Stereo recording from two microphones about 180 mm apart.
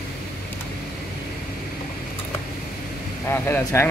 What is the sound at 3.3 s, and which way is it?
Speech, 10° left (ahead or behind).